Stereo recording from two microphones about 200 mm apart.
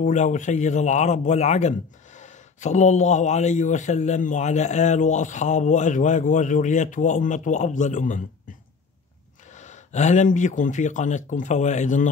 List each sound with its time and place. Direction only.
0.0 s a man's voice: 40° left (ahead or behind)